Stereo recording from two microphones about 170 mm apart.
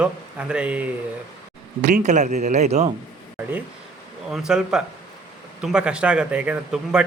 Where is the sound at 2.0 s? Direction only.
45° right (ahead or behind).